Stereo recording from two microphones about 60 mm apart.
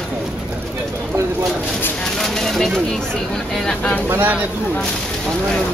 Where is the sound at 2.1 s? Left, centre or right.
Centre.